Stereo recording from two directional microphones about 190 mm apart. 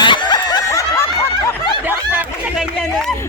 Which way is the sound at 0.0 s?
25° left (ahead or behind).